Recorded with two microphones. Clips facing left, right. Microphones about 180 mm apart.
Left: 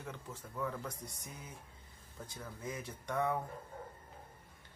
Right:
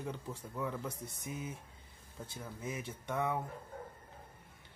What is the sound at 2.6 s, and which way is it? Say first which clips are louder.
Speech: right 1 dB; 25° right (ahead or behind).